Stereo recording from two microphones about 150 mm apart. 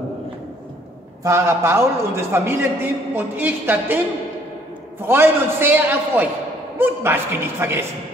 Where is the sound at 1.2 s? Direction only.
15° right (ahead or behind).